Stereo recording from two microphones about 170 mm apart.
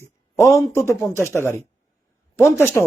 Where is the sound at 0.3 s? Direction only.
15° left (ahead or behind).